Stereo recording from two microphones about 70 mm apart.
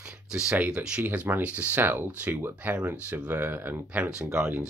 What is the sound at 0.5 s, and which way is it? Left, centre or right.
Speech, centre.